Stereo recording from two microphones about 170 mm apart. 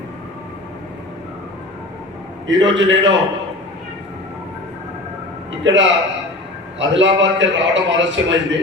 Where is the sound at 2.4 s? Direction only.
90° right.